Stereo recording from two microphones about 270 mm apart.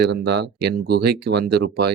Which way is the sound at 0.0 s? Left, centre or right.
Right.